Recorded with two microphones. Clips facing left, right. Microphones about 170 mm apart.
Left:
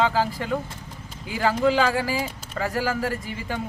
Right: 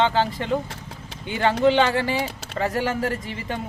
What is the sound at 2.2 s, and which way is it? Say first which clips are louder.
Speech: right 2 dB; 75° right (ahead or behind).